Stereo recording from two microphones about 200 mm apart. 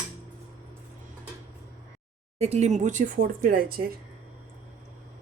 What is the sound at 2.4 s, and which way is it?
Speech, 35° right (ahead or behind).